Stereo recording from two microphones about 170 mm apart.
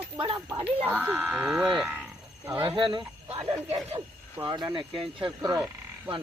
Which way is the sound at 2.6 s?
30° right (ahead or behind).